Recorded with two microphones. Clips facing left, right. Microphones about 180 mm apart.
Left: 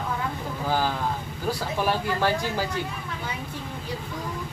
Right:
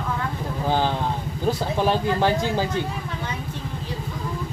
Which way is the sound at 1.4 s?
20° right (ahead or behind).